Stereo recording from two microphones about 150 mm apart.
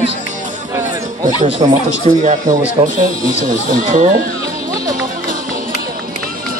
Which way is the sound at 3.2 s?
65° right (ahead or behind).